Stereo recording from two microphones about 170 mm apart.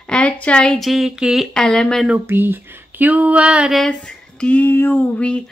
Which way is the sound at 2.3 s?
10° right (ahead or behind).